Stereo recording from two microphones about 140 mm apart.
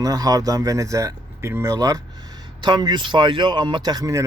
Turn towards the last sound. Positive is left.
turn(degrees=-25)  # may be behind; listen again after turning